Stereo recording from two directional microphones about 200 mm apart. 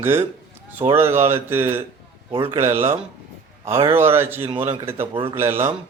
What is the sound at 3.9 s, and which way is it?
A man's voice, 10° right (ahead or behind).